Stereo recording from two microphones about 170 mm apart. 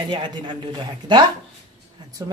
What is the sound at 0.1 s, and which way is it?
Speech, 25° right (ahead or behind).